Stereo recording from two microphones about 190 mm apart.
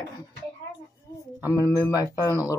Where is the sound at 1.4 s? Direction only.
15° left (ahead or behind).